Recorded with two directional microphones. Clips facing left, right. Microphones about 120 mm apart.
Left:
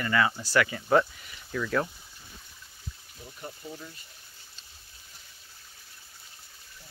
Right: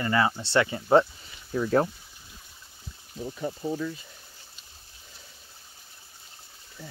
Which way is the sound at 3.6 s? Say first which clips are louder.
Right 12 dB; 90° right.